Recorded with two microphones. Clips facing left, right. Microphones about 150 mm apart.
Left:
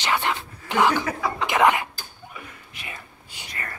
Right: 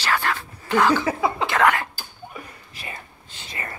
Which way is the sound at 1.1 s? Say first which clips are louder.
Right 4 dB; 25° right (ahead or behind).